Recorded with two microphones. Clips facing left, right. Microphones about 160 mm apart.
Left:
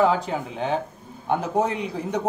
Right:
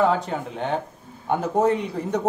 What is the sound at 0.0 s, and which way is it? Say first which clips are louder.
A man's voice: even; centre (ahead or behind).